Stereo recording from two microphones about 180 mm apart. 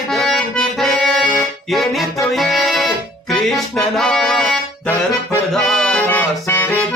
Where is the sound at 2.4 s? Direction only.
Centre (ahead or behind).